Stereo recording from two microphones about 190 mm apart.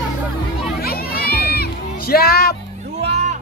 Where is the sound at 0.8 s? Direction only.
55° left (ahead or behind).